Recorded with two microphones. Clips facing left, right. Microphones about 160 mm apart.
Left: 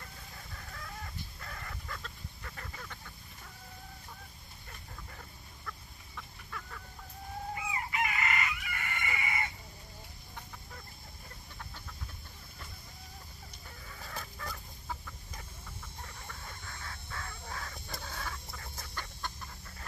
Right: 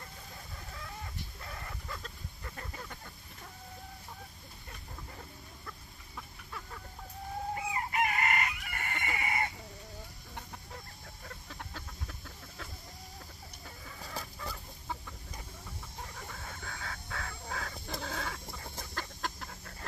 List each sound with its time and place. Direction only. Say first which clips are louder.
1.4 s chicken: right 2 dB; 20° right (ahead or behind)
2.0 s a sound: right 1 dB; 35° right (ahead or behind)
5.7 s chicken: left 5 dB; 25° right (ahead or behind)
7.5 s chicken: right 3 dB; 45° right (ahead or behind)
11.2 s chicken: right 4 dB; 90° right
14.1 s chicken: right 1 dB; 5° right (ahead or behind)
16.3 s bird: right 3 dB; 75° right (ahead or behind)
18.9 s chicken: right 3 dB; 90° right